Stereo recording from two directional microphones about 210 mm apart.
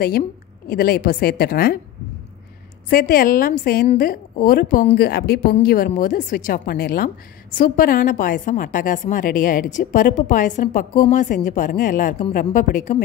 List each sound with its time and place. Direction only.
0.7 s a woman's voice: 45° left (ahead or behind)
2.9 s a woman's voice: 45° left (ahead or behind)